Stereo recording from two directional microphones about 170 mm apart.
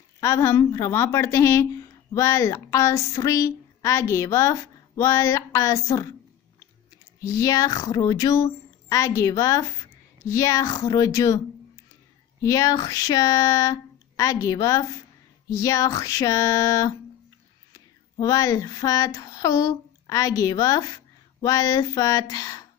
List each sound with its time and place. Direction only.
0.2 s a woman's voice: 15° left (ahead or behind)
7.2 s speech: 20° left (ahead or behind)
17.7 s child singing: 20° left (ahead or behind)